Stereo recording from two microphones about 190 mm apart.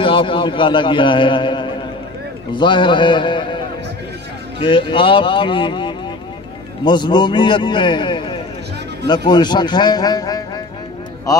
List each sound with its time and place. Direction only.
0.0 s a man's voice: 25° left (ahead or behind)